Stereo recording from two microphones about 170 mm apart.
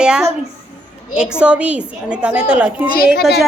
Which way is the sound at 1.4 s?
5° right (ahead or behind).